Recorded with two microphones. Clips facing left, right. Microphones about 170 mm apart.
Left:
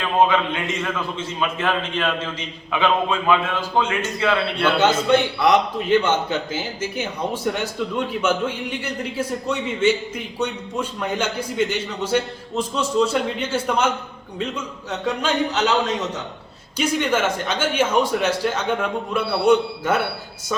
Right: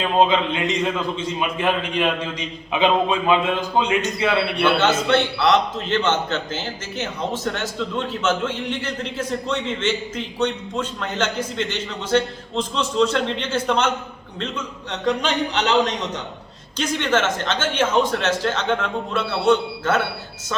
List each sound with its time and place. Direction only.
0.2 s a man's voice: 20° right (ahead or behind)
4.6 s a man's voice: 10° left (ahead or behind)